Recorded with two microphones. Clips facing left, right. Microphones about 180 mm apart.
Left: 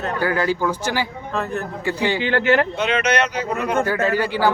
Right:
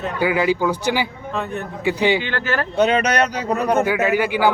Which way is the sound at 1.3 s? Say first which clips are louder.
Left 2 dB; centre (ahead or behind).